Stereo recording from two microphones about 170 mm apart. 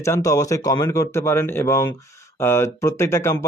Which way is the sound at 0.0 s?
20° left (ahead or behind).